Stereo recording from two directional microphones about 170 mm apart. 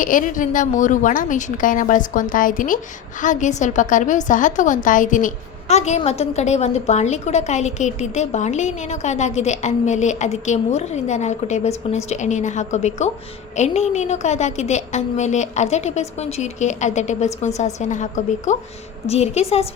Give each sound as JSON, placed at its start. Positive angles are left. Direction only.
{"t": 0.0, "sound": "a woman's voice", "side_deg": 50}